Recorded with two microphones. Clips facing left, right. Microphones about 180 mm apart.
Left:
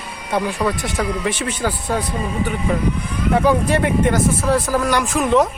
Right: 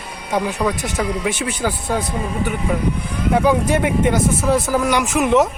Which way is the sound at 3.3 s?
5° right (ahead or behind).